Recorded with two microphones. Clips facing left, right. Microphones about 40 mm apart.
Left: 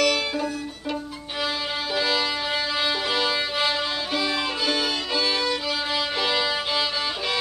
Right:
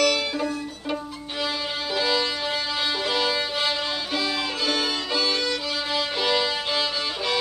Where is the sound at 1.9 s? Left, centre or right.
Centre.